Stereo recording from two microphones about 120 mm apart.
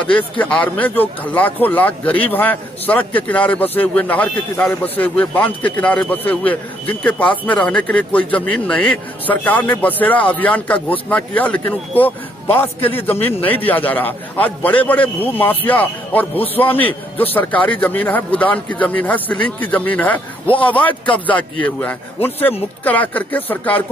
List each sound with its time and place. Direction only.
0.0 s a man's voice: 10° left (ahead or behind)